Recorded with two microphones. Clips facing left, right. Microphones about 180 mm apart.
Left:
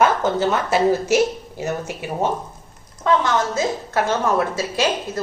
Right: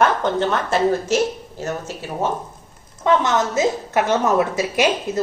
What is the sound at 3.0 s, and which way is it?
A woman's voice, 20° right (ahead or behind).